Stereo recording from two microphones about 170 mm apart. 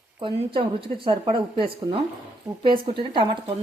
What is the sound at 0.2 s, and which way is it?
A woman's voice, 30° right (ahead or behind).